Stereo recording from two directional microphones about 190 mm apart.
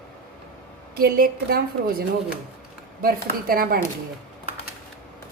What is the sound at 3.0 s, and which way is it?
Speech, 50° right (ahead or behind).